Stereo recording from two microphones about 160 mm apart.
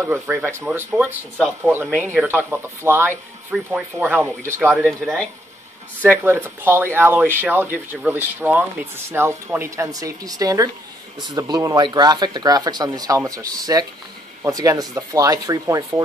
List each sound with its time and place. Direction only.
0.1 s speech: 15° right (ahead or behind)
4.8 s speech: 5° left (ahead or behind)
6.0 s speech: 15° right (ahead or behind)